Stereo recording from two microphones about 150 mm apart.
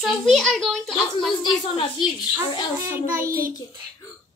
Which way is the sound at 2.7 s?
15° right (ahead or behind).